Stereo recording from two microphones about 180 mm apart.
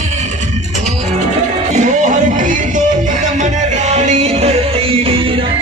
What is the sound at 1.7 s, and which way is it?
Music, 40° right (ahead or behind).